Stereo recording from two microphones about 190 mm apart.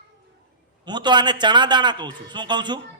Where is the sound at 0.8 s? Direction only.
25° right (ahead or behind).